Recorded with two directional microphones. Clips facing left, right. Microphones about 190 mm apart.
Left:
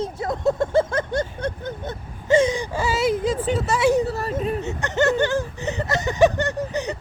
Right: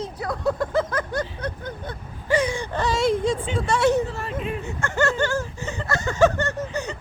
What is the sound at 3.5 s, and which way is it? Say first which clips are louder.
Speech: left 1 dB; 5° left (ahead or behind).